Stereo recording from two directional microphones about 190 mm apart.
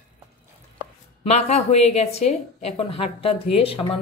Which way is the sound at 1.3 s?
35° left (ahead or behind).